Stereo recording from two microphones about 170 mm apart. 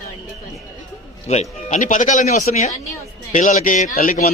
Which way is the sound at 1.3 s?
40° left (ahead or behind).